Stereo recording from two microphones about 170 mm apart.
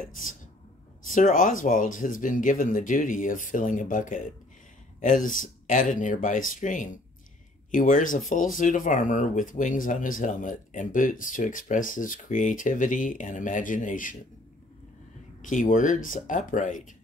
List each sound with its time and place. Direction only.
0.0 s speech: 50° left (ahead or behind)
15.4 s speech: 50° left (ahead or behind)